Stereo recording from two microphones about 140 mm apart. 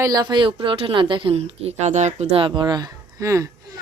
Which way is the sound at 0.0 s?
30° right (ahead or behind).